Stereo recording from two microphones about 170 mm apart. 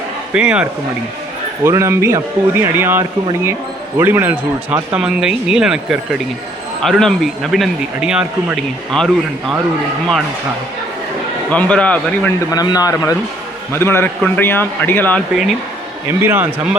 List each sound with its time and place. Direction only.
0.3 s speech: 5° right (ahead or behind)
11.5 s speech: 5° left (ahead or behind)
12.5 s a man's voice: 20° left (ahead or behind)
16.0 s speech: 15° right (ahead or behind)